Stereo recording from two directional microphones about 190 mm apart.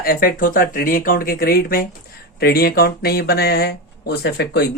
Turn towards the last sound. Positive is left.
turn(degrees=60)  # may be behind; listen again after turning